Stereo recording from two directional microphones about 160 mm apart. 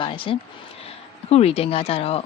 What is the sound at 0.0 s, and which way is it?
Speech, 30° left (ahead or behind).